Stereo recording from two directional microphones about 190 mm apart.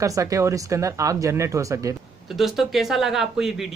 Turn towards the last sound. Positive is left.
turn(degrees=0)  # may be behind; listen again after turning